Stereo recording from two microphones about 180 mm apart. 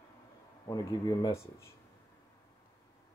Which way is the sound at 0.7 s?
20° left (ahead or behind).